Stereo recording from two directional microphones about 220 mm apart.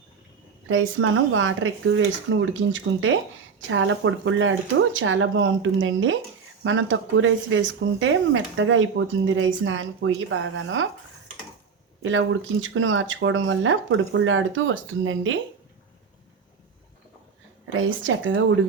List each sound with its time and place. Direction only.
0.7 s speech: 65° right (ahead or behind)
12.0 s speech: 60° right (ahead or behind)
17.7 s speech: 60° right (ahead or behind)